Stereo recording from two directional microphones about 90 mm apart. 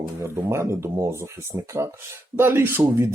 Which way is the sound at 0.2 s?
30° right (ahead or behind).